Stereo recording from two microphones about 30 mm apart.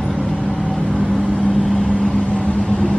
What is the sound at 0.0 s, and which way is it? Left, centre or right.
Vehicle, left.